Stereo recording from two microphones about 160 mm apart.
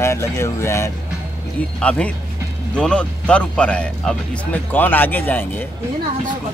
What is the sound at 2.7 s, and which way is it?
A man's voice, 5° left (ahead or behind).